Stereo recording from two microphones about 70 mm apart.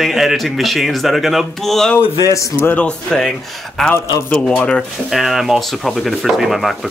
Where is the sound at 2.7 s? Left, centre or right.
Centre.